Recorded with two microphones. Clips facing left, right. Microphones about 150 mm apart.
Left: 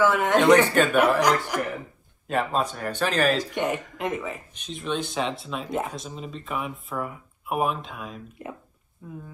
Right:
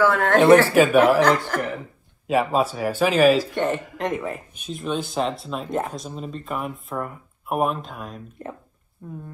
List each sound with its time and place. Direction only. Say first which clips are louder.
0.0 s speech: right 2 dB; 20° left (ahead or behind)
0.4 s speech: right 5 dB; 5° right (ahead or behind)
1.5 s a man's voice: right 2 dB; 10° left (ahead or behind)
2.2 s speech: right 5 dB; 5° right (ahead or behind)
3.5 s a man's voice: right 3 dB; 10° left (ahead or behind)
4.0 s a man's voice: right 3 dB; centre (ahead or behind)